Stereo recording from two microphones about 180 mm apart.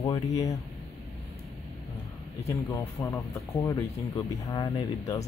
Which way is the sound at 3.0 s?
15° left (ahead or behind).